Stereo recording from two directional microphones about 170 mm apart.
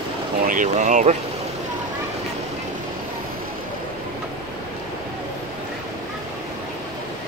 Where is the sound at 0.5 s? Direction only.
50° right (ahead or behind).